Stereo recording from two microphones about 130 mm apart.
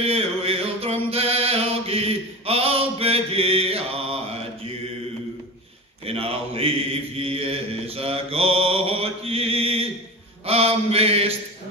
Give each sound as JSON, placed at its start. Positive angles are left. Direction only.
{"t": 0.0, "sound": "chant", "side_deg": -50}
{"t": 6.0, "sound": "mantra", "side_deg": -50}